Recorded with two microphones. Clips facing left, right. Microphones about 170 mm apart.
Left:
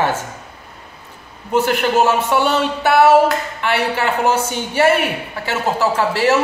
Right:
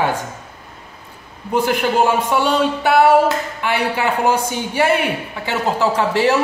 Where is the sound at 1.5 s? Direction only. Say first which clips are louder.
Left 1 dB; 15° right (ahead or behind).